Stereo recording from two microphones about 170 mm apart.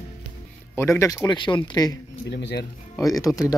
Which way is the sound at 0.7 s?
15° left (ahead or behind).